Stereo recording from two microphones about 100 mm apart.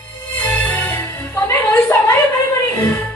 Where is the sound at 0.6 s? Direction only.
20° left (ahead or behind).